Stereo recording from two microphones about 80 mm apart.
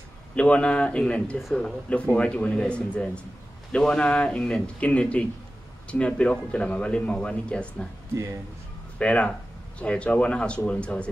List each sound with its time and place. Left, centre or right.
0.4 s speech: centre
8.9 s speech: centre